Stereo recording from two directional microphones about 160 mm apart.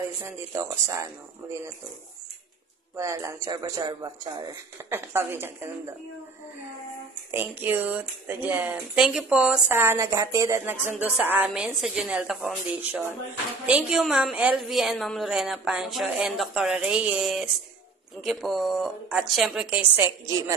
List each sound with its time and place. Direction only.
0.0 s speech: 15° right (ahead or behind)
3.0 s speech: 20° right (ahead or behind)
4.7 s speech: 15° right (ahead or behind)
7.2 s a woman's voice: 10° right (ahead or behind)